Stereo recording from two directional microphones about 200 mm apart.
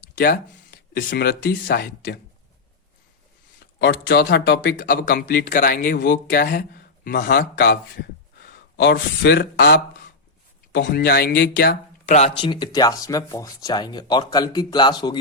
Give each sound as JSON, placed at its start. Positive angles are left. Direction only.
{"t": 0.2, "sound": "speech", "side_deg": 50}
{"t": 3.8, "sound": "speech", "side_deg": 55}
{"t": 12.1, "sound": "speech", "side_deg": 30}